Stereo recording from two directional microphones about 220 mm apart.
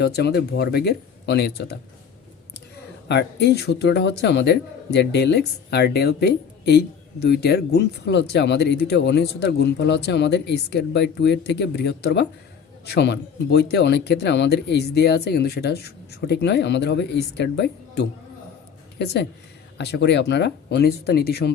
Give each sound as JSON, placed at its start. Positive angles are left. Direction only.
{"t": 0.0, "sound": "a man's voice", "side_deg": 50}
{"t": 3.1, "sound": "a man's voice", "side_deg": 50}